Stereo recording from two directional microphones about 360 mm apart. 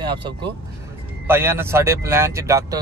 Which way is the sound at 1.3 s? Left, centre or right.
Centre.